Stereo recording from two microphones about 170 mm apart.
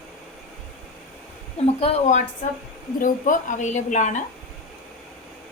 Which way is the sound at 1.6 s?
35° left (ahead or behind).